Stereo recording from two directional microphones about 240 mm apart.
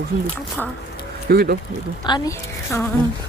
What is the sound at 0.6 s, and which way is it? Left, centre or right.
Speech, centre.